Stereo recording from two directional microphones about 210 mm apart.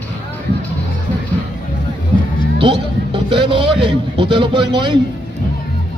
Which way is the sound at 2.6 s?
25° right (ahead or behind).